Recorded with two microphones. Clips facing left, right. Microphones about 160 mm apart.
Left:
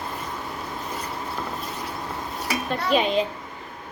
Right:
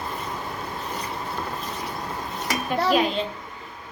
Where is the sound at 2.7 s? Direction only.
5° right (ahead or behind).